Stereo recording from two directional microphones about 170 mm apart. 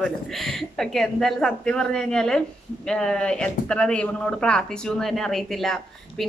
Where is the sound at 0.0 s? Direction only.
Centre (ahead or behind).